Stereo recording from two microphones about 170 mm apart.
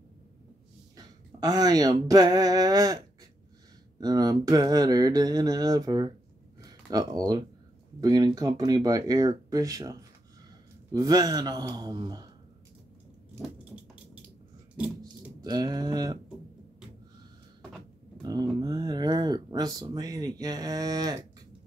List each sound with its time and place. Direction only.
0.9 s speech: 20° right (ahead or behind)
4.0 s speech: 20° right (ahead or behind)
15.4 s speech: 25° right (ahead or behind)
18.2 s speech: 25° right (ahead or behind)